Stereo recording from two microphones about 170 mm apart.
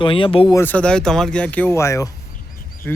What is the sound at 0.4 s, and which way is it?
A man's voice, 15° left (ahead or behind).